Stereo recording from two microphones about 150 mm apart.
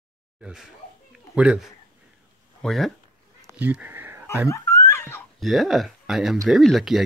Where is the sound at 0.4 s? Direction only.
5° right (ahead or behind).